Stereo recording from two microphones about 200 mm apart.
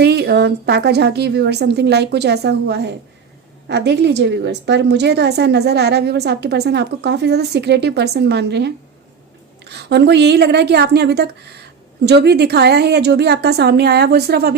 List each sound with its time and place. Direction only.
0.0 s a woman's voice: 55° right (ahead or behind)